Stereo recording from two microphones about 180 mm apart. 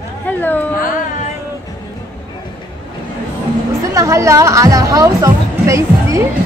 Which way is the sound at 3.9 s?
15° right (ahead or behind).